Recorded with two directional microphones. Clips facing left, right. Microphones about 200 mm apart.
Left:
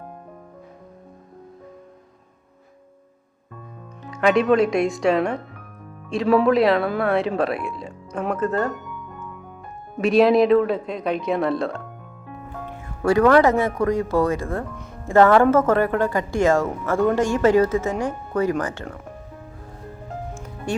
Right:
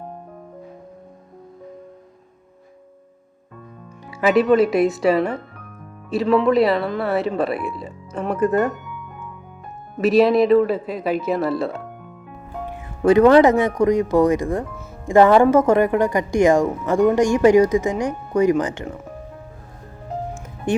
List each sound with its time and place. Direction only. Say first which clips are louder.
4.0 s speech: right 1 dB; 5° right (ahead or behind)
8.7 s music: left 1 dB; centre (ahead or behind)
10.0 s speech: right 1 dB; centre (ahead or behind)
13.0 s speech: right 4 dB; 20° right (ahead or behind)
20.7 s speech: right 5 dB; 20° right (ahead or behind)